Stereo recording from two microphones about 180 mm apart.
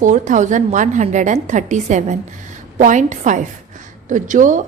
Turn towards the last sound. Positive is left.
turn(degrees=-45)  # may be behind; listen again after turning